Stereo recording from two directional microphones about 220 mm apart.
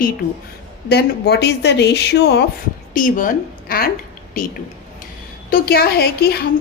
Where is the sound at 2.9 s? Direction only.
40° left (ahead or behind).